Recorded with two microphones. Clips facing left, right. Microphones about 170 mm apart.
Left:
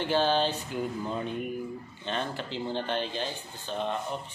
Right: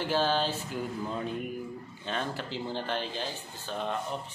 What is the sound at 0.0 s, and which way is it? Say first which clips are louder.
Speech: left 2 dB; 5° right (ahead or behind).